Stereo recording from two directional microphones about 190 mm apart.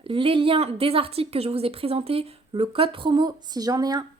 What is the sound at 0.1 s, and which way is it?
A woman's voice, 25° right (ahead or behind).